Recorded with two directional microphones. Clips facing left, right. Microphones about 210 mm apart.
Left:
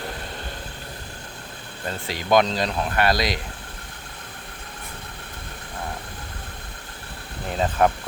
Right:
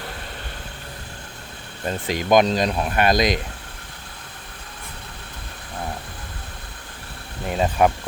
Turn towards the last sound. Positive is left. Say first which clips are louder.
# right 2 dB
turn(degrees=-10)  # may be behind; listen again after turning